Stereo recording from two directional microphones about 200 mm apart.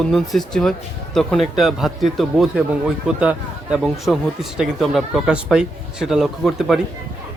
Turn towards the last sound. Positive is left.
turn(degrees=0)  # may be behind; listen again after turning